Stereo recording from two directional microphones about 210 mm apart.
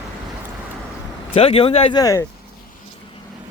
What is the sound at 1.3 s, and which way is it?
Speech, 25° left (ahead or behind).